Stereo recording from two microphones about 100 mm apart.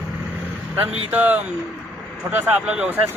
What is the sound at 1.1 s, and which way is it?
A man's voice, 15° right (ahead or behind).